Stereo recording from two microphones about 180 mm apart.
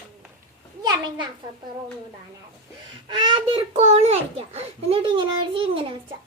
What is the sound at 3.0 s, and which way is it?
A child's voice, 30° right (ahead or behind).